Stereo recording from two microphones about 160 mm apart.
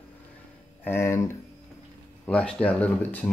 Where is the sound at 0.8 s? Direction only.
15° left (ahead or behind).